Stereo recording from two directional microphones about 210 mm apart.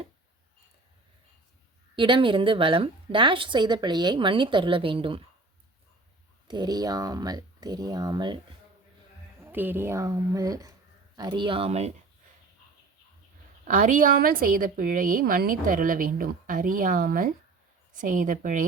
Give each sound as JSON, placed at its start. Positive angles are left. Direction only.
{"t": 2.0, "sound": "a woman's voice", "side_deg": -25}
{"t": 6.5, "sound": "speech", "side_deg": -20}
{"t": 9.4, "sound": "a woman's voice", "side_deg": -10}
{"t": 13.7, "sound": "a woman's voice", "side_deg": -35}